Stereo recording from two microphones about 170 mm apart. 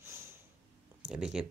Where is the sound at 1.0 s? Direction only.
5° right (ahead or behind).